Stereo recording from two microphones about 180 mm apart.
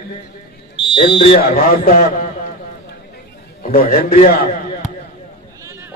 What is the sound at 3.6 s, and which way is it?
A man's voice, 55° left (ahead or behind).